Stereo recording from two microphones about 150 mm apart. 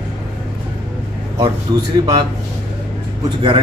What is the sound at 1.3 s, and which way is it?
Speech, 30° right (ahead or behind).